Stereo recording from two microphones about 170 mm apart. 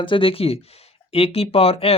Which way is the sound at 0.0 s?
30° left (ahead or behind).